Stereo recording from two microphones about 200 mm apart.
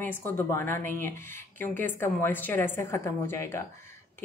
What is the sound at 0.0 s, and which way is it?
Speech, 10° left (ahead or behind).